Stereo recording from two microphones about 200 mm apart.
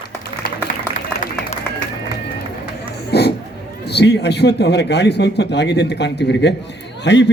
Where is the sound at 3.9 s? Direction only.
55° left (ahead or behind).